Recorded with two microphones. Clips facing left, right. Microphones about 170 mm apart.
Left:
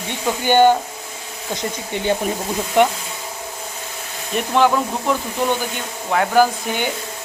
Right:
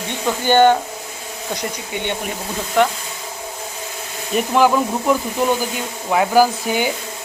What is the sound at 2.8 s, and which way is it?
Speech, 20° left (ahead or behind).